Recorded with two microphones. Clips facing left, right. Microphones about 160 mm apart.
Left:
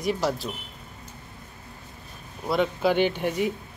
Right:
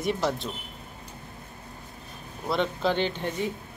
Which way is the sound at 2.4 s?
5° left (ahead or behind).